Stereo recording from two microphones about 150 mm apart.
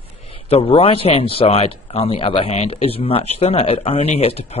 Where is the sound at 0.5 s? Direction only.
40° left (ahead or behind).